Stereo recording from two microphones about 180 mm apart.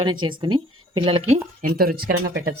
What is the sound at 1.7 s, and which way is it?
Speech, 55° right (ahead or behind).